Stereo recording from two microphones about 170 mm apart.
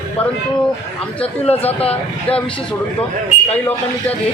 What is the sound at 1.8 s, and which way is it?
Speech, 35° left (ahead or behind).